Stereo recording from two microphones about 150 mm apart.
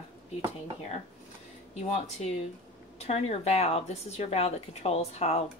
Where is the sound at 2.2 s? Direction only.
45° left (ahead or behind).